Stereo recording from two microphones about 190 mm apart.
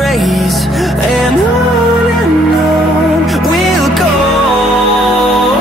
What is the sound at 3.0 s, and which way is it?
Music, centre (ahead or behind).